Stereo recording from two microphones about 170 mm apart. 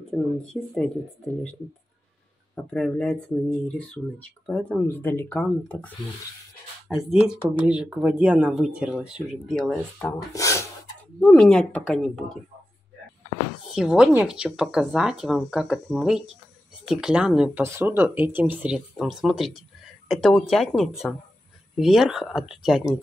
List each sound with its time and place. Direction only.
0.1 s speech: 5° left (ahead or behind)
2.5 s speech: 5° left (ahead or behind)
6.9 s speech: 5° right (ahead or behind)
10.0 s speech: 20° left (ahead or behind)
11.1 s speech: 5° left (ahead or behind)
13.7 s speech: 5° right (ahead or behind)